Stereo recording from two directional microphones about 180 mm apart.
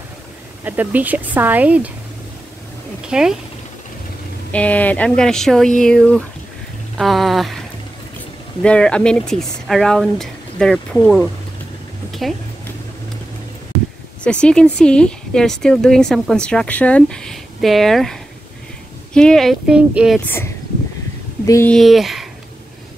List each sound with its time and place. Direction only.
0.7 s speech: 10° right (ahead or behind)
3.1 s speech: 5° right (ahead or behind)
4.5 s speech: 10° left (ahead or behind)
8.6 s speech: 5° left (ahead or behind)
12.1 s a sound: centre (ahead or behind)
14.2 s speech: 5° left (ahead or behind)
20.2 s speech: 10° left (ahead or behind)
21.6 s speech: centre (ahead or behind)